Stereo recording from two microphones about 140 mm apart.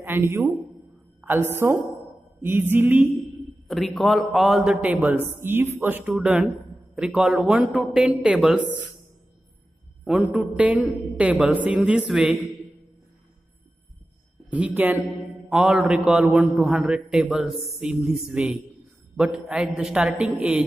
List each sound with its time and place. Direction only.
0.0 s a man's voice: 15° right (ahead or behind)
1.5 s speech: 15° right (ahead or behind)
3.6 s a man's voice: centre (ahead or behind)
4.8 s speech: 15° right (ahead or behind)
6.1 s a man's voice: 5° right (ahead or behind)
10.3 s speech: 5° right (ahead or behind)
14.5 s a man's voice: 10° right (ahead or behind)